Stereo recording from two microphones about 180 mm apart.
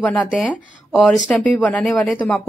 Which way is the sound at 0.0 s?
10° left (ahead or behind).